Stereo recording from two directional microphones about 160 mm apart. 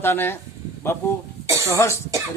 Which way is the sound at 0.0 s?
15° left (ahead or behind).